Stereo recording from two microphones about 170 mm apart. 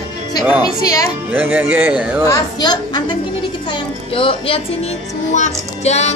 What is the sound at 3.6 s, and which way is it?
Music, 30° left (ahead or behind).